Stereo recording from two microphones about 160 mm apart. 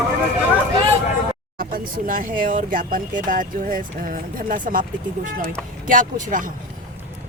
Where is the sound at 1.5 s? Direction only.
60° right (ahead or behind).